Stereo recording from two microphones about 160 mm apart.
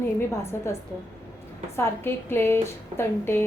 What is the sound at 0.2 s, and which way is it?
A woman's voice, 15° left (ahead or behind).